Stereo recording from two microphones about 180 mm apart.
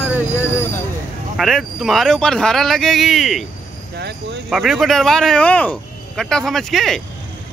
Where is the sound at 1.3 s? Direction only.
Centre (ahead or behind).